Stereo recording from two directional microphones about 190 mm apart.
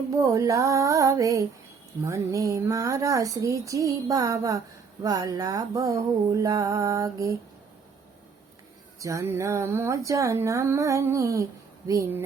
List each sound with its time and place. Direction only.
0.1 s speech: 15° right (ahead or behind)
9.0 s speech: 15° right (ahead or behind)